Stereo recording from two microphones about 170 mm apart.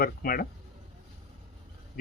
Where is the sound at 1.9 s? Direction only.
60° left (ahead or behind).